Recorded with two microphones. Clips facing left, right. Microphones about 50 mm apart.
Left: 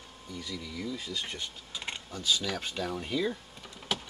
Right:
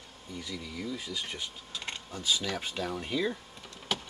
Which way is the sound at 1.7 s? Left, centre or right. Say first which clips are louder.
Left 1 dB; centre.